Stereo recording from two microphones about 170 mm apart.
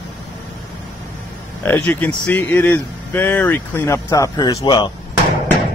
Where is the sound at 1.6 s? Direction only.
10° left (ahead or behind).